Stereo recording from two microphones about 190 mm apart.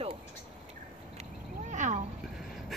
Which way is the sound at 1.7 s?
40° right (ahead or behind).